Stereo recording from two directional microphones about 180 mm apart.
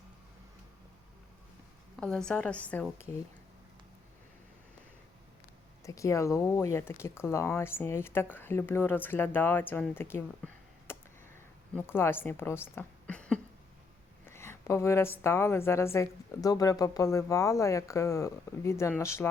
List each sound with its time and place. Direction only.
2.0 s a woman's voice: 5° left (ahead or behind)
5.8 s a woman's voice: 15° left (ahead or behind)
12.7 s a sound: 5° left (ahead or behind)
15.2 s a woman's voice: 15° left (ahead or behind)